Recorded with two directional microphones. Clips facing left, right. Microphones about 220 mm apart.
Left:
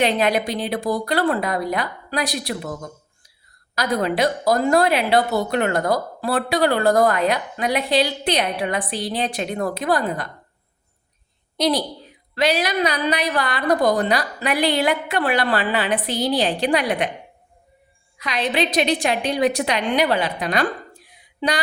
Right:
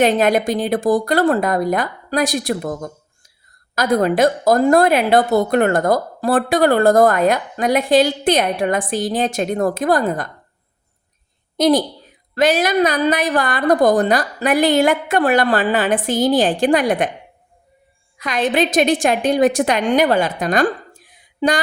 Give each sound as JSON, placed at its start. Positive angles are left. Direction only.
{"t": 0.0, "sound": "a woman's voice", "side_deg": -45}
{"t": 11.5, "sound": "a woman's voice", "side_deg": -45}
{"t": 18.2, "sound": "a woman's voice", "side_deg": -50}